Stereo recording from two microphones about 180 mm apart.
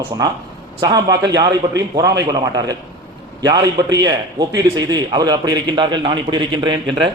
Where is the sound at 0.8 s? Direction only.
20° right (ahead or behind).